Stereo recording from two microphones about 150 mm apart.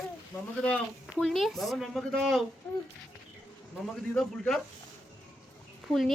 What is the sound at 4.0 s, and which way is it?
Speech, 5° left (ahead or behind).